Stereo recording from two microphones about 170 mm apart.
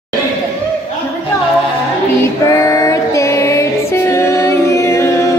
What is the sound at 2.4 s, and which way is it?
Music, 20° left (ahead or behind).